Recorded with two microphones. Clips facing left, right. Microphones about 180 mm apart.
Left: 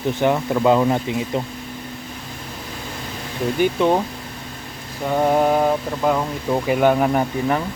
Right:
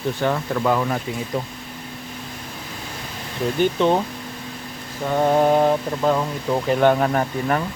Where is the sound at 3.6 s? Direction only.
10° left (ahead or behind).